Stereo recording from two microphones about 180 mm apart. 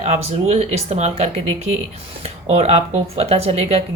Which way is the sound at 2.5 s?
35° right (ahead or behind).